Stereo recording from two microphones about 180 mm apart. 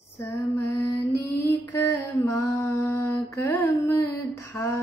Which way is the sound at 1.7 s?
15° left (ahead or behind).